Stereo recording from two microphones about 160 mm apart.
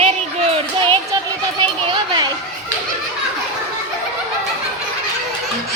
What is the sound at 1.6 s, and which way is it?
Chatter, 25° right (ahead or behind).